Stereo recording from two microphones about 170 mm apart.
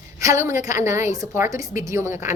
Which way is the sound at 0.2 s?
15° right (ahead or behind).